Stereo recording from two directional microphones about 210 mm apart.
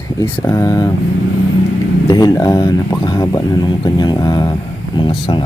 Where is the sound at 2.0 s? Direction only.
20° left (ahead or behind).